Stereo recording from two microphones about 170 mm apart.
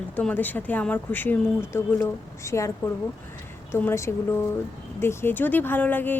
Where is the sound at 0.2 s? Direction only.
10° left (ahead or behind).